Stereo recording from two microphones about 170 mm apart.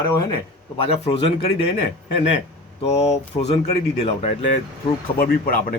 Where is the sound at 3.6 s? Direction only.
40° left (ahead or behind).